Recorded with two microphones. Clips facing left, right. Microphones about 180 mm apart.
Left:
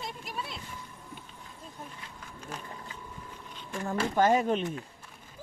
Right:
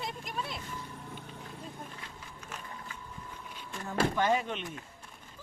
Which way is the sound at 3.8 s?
45° left (ahead or behind).